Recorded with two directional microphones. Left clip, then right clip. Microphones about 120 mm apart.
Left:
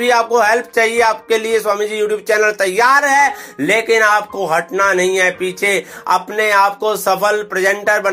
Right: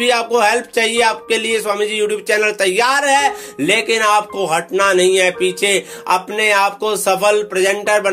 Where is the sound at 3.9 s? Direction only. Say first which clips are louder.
Left 2 dB; 30° right (ahead or behind).